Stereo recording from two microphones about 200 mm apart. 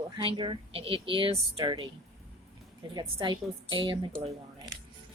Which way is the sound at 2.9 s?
25° right (ahead or behind).